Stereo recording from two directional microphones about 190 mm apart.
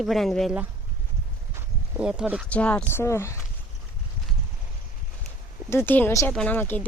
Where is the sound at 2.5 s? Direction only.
5° left (ahead or behind).